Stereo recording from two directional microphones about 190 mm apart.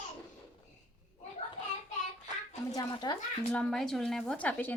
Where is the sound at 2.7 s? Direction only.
20° left (ahead or behind).